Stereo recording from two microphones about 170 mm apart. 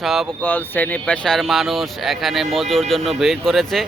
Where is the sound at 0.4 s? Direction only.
10° left (ahead or behind).